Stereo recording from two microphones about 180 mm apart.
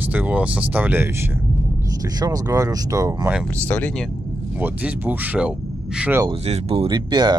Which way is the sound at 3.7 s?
10° left (ahead or behind).